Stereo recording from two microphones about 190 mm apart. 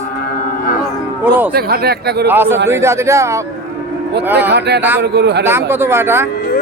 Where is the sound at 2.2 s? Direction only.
10° right (ahead or behind).